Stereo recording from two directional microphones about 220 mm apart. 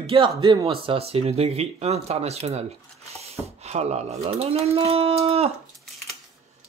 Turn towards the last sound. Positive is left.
turn(degrees=-25)  # may be behind; listen again after turning